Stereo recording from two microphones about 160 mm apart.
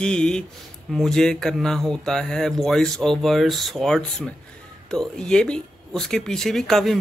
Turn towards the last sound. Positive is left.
turn(degrees=0)  # may be behind; listen again after turning